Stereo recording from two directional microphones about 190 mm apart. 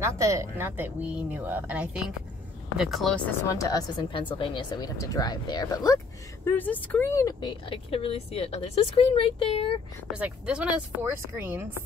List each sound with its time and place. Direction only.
0.0 s speech: 15° right (ahead or behind); by 3.2 s centre (ahead or behind)
3.4 s speech: 15° left (ahead or behind)
6.4 s speech: 10° left (ahead or behind); by 9.8 s 30° left (ahead or behind)
10.1 s speech: 5° right (ahead or behind)